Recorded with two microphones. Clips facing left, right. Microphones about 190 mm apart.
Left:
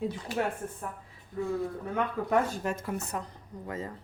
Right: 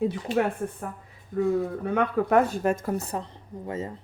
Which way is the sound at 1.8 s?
75° right (ahead or behind).